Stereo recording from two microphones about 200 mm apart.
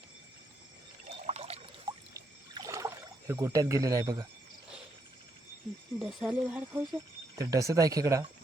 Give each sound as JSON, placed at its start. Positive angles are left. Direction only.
{"t": 1.3, "sound": "pour", "side_deg": -30}
{"t": 2.6, "sound": "pour", "side_deg": -15}
{"t": 6.0, "sound": "speech", "side_deg": 0}